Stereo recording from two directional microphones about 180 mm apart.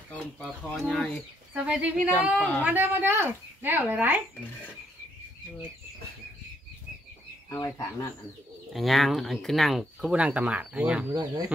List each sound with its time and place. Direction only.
0.7 s speech: 5° left (ahead or behind)
1.5 s speech: 5° right (ahead or behind)
2.0 s speech: 5° left (ahead or behind)
2.6 s speech: 10° right (ahead or behind)
7.4 s speech: 15° left (ahead or behind)
8.7 s speech: centre (ahead or behind)